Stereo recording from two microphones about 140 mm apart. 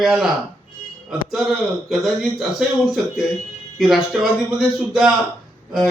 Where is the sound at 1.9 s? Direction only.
Centre (ahead or behind).